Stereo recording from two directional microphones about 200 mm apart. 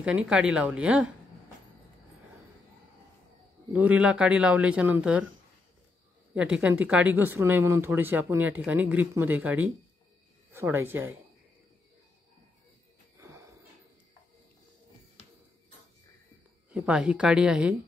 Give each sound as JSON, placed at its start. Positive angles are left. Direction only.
{"t": 0.0, "sound": "speech", "side_deg": -5}
{"t": 3.7, "sound": "speech", "side_deg": -5}
{"t": 6.3, "sound": "speech", "side_deg": -5}
{"t": 13.2, "sound": "a sound", "side_deg": -15}
{"t": 16.7, "sound": "speech", "side_deg": -5}